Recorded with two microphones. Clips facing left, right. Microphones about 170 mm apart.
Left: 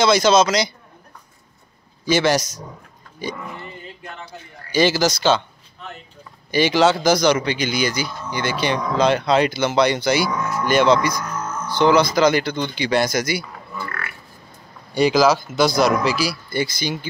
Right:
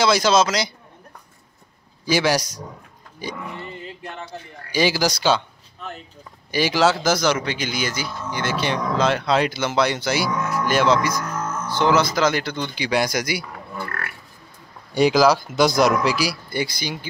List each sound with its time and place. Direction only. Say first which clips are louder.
0.0 s speech: left 2 dB; 5° right (ahead or behind)
2.0 s speech: left 2 dB; 10° right (ahead or behind)
4.7 s speech: left 3 dB; 10° right (ahead or behind)
6.5 s speech: left 3 dB; 5° right (ahead or behind)
13.7 s pig: even; 50° right (ahead or behind)
15.3 s speech: even; 15° right (ahead or behind)